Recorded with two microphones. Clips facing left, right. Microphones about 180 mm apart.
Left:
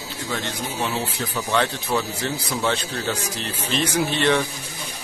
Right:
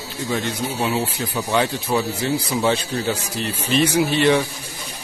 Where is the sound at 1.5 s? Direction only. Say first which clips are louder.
Right 2 dB; 10° right (ahead or behind).